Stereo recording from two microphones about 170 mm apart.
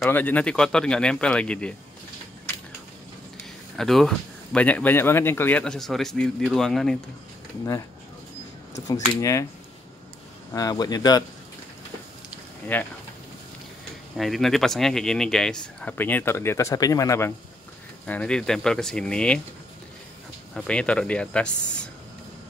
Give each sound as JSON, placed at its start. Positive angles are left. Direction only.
{"t": 0.0, "sound": "speech", "side_deg": 10}
{"t": 3.7, "sound": "speech", "side_deg": 0}
{"t": 9.2, "sound": "speech", "side_deg": 20}
{"t": 10.5, "sound": "speech", "side_deg": 20}
{"t": 12.7, "sound": "speech", "side_deg": 10}
{"t": 14.1, "sound": "speech", "side_deg": 0}
{"t": 18.0, "sound": "speech", "side_deg": 5}
{"t": 20.5, "sound": "speech", "side_deg": 5}